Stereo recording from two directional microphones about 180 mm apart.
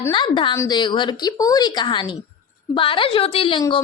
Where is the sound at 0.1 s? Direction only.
25° left (ahead or behind).